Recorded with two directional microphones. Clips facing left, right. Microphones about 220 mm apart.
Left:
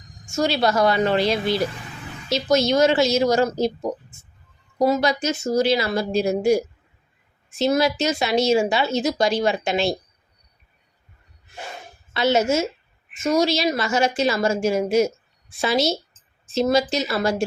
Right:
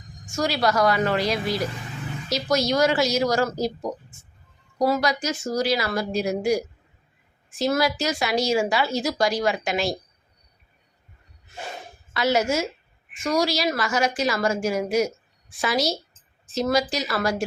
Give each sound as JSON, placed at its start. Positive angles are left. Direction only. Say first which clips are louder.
{"t": 0.3, "sound": "a woman's voice", "louder": "left 3 dB", "side_deg": 25}
{"t": 12.1, "sound": "a woman's voice", "louder": "left 3 dB", "side_deg": 25}